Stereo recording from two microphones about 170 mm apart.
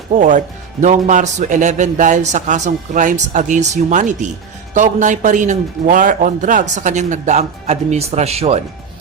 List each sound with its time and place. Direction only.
0.2 s a man's voice: 45° right (ahead or behind)